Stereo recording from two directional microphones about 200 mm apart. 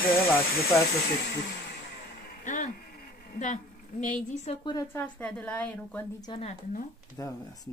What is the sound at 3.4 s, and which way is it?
Speech, 35° left (ahead or behind).